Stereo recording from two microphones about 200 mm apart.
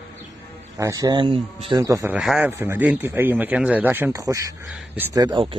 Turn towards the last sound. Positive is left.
turn(degrees=-25)  # may be behind; listen again after turning